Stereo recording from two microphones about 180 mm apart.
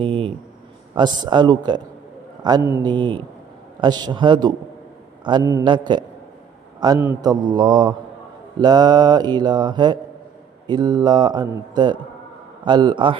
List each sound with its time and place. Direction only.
0.0 s a sound: 30° right (ahead or behind)
0.9 s speech: 25° right (ahead or behind)
2.6 s speech: 10° right (ahead or behind)
2.8 s a man's voice: 25° right (ahead or behind)